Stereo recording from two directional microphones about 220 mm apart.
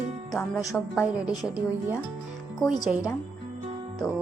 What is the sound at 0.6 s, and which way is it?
Speech, 15° left (ahead or behind).